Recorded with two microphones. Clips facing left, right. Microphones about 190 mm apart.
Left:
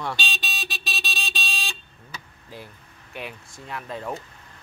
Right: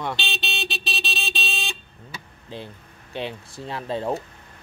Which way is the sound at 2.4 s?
25° right (ahead or behind).